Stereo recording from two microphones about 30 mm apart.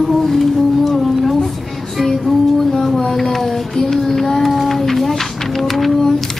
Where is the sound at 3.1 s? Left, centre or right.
Centre.